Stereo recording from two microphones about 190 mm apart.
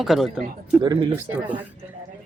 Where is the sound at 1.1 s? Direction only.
10° right (ahead or behind).